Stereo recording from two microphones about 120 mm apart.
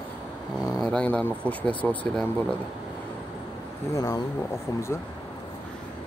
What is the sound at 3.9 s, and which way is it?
Speech, 30° left (ahead or behind).